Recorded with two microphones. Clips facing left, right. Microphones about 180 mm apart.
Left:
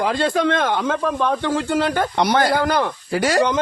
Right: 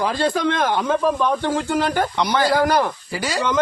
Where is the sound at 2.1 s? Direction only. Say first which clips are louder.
Left 1 dB; 55° left (ahead or behind).